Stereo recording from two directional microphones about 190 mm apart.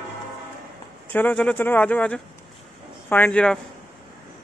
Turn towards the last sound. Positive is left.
turn(degrees=5)  # may be behind; listen again after turning